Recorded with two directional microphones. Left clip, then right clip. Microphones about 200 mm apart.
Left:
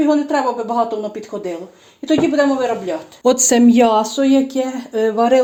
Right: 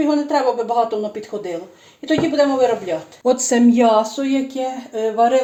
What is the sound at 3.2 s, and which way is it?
Speech, 50° left (ahead or behind).